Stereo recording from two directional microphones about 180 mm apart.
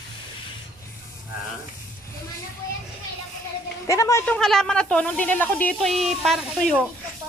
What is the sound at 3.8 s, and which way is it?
Speech, 15° left (ahead or behind).